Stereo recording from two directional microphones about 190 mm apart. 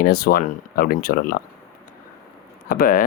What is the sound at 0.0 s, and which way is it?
Speech, 50° left (ahead or behind).